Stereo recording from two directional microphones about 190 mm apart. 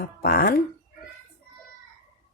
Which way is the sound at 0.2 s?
50° left (ahead or behind).